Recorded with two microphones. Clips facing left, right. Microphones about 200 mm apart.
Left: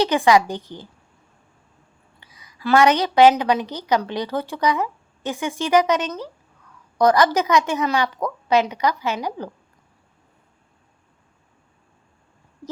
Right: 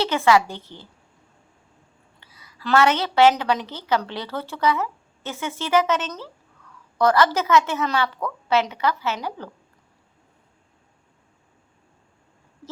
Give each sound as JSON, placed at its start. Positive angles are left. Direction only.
{"t": 0.0, "sound": "a woman's voice", "side_deg": 15}
{"t": 2.2, "sound": "a woman's voice", "side_deg": 15}